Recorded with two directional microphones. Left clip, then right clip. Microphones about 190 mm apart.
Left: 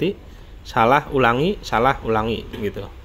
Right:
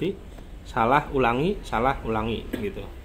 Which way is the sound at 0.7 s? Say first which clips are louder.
Left 5 dB; 35° left (ahead or behind).